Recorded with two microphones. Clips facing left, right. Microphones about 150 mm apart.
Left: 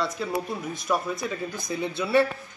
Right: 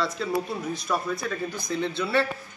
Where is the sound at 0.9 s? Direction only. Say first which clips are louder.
Left 2 dB; 10° left (ahead or behind).